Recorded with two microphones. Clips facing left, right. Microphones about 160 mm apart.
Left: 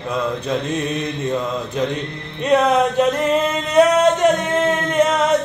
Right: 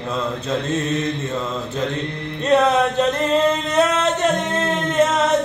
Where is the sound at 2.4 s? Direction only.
10° left (ahead or behind).